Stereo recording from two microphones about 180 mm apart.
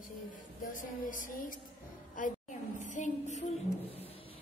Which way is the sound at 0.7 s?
50° left (ahead or behind).